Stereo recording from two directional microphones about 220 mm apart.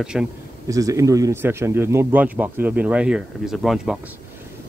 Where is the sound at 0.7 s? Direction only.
15° right (ahead or behind).